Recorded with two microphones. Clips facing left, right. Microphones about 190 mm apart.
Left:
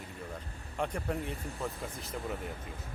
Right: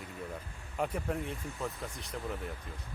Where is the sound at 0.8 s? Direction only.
Centre (ahead or behind).